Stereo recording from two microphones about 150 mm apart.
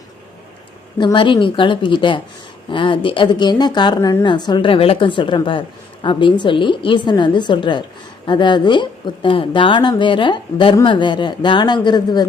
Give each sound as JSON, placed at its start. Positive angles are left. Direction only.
{"t": 0.9, "sound": "a woman's voice", "side_deg": 30}